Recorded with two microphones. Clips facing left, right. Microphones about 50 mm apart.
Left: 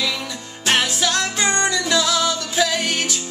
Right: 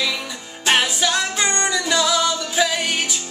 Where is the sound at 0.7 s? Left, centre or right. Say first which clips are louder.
Right 1 dB; centre.